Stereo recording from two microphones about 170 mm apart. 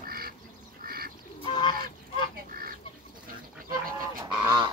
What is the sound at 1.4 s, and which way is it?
Goose, 25° left (ahead or behind).